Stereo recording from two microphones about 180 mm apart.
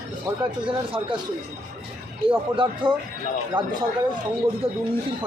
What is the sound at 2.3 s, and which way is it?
Speech, 30° right (ahead or behind).